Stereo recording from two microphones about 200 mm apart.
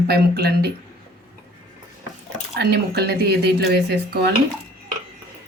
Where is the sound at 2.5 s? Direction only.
55° right (ahead or behind).